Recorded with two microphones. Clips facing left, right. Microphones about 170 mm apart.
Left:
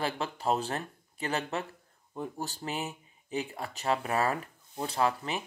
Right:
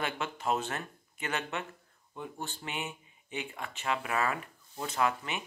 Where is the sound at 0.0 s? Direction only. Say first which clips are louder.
Left 2 dB; 35° left (ahead or behind).